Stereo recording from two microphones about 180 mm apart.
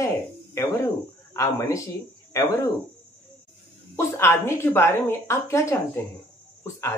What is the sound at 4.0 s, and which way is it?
A woman's voice, 15° left (ahead or behind).